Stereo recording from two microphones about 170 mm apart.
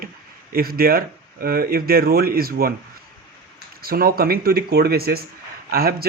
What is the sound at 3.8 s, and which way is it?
Speech, 60° right (ahead or behind).